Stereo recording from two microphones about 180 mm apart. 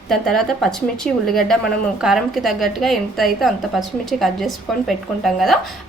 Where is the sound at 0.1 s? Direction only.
Centre (ahead or behind).